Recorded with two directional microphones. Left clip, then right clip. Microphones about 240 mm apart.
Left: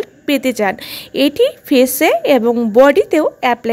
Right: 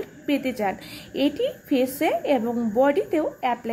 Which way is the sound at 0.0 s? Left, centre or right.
Left.